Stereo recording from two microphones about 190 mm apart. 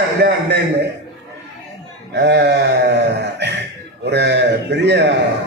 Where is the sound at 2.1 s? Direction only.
65° right (ahead or behind).